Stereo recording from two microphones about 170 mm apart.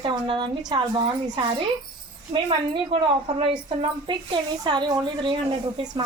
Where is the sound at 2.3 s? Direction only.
40° right (ahead or behind).